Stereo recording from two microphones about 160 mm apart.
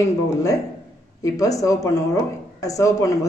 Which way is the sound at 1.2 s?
20° left (ahead or behind).